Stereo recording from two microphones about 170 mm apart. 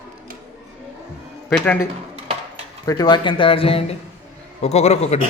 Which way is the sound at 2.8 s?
25° left (ahead or behind).